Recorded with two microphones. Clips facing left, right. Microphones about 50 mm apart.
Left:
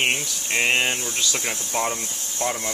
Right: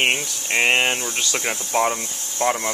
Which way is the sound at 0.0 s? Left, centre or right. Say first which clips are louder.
Right 2 dB; centre.